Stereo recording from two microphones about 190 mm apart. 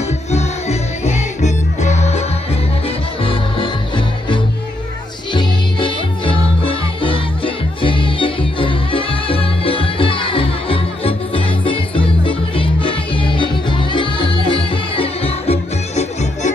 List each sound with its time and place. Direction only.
0.3 s music: 35° left (ahead or behind)
3.3 s music: 25° left (ahead or behind)